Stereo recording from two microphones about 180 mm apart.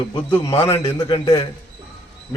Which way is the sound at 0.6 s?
30° left (ahead or behind).